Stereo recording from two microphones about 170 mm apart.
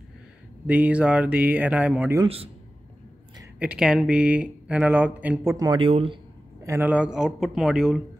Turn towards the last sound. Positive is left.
turn(degrees=0)  # may be behind; listen again after turning